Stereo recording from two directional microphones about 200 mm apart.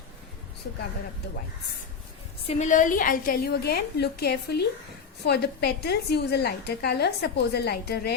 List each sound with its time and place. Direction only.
2.5 s a woman's voice: 35° left (ahead or behind); by 8.1 s 55° left (ahead or behind)